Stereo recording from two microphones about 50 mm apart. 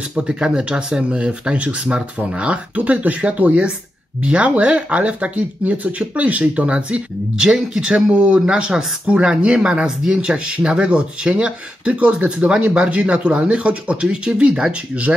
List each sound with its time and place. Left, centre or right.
0.2 s speech: centre
7.3 s speech: centre